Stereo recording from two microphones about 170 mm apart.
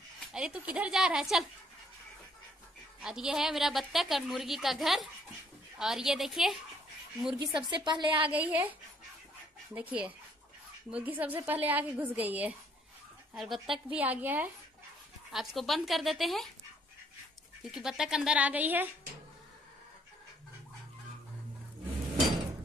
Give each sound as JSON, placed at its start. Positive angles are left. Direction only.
{"t": 0.3, "sound": "a woman's voice", "side_deg": -5}
{"t": 3.0, "sound": "a woman's voice", "side_deg": -5}
{"t": 7.3, "sound": "a woman's voice", "side_deg": -30}
{"t": 8.3, "sound": "a woman's voice", "side_deg": -10}
{"t": 9.8, "sound": "a woman's voice", "side_deg": -10}
{"t": 15.3, "sound": "a woman's voice", "side_deg": 0}
{"t": 17.6, "sound": "a woman's voice", "side_deg": -5}